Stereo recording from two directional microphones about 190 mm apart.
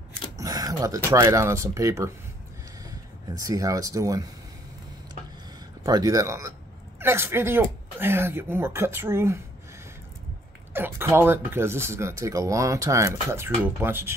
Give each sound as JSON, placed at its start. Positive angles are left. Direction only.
{"t": 0.4, "sound": "speech", "side_deg": -20}
{"t": 5.9, "sound": "speech", "side_deg": -20}
{"t": 10.7, "sound": "speech", "side_deg": -10}